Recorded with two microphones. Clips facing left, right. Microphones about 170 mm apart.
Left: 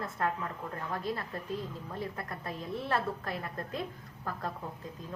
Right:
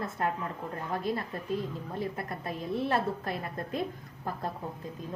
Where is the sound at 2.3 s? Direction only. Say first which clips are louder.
Right 4 dB; 20° right (ahead or behind).